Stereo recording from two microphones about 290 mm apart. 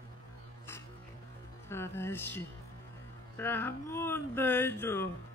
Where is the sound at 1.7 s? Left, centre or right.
Centre.